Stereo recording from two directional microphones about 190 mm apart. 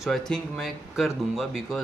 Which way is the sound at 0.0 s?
Centre (ahead or behind).